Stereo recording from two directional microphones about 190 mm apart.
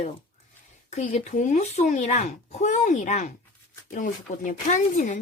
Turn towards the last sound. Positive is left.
turn(degrees=40)  # may be behind; listen again after turning